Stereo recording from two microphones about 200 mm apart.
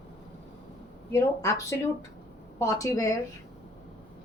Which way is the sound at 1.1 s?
15° left (ahead or behind).